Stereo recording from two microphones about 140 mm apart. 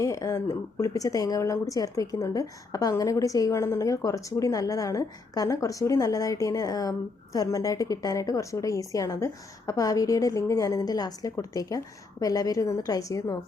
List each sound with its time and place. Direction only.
0.0 s speech: 20° left (ahead or behind)